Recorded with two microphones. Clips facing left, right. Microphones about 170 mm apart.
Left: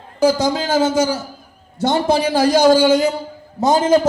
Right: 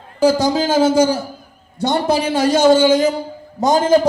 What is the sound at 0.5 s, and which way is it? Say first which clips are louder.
Speech: right 3 dB; 10° right (ahead or behind).